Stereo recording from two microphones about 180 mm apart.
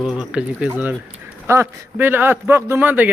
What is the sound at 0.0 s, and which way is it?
A man's voice, 5° right (ahead or behind).